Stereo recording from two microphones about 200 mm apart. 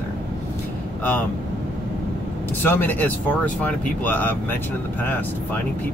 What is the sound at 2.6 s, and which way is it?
Speech, 10° left (ahead or behind).